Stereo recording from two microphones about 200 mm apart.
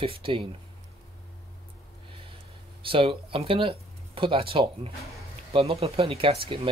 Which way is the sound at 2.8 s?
25° right (ahead or behind).